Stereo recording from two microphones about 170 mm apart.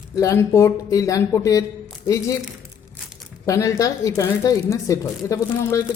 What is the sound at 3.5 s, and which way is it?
A woman's voice, 20° left (ahead or behind).